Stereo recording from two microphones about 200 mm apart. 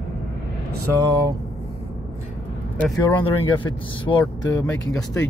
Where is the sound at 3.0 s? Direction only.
25° left (ahead or behind).